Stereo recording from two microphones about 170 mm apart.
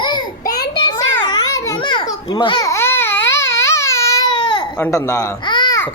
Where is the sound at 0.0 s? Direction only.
25° left (ahead or behind).